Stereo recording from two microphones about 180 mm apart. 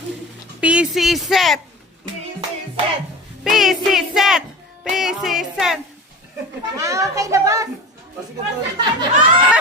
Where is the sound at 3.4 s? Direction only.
Centre (ahead or behind).